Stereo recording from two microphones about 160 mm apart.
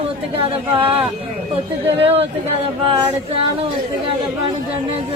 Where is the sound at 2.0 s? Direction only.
40° right (ahead or behind).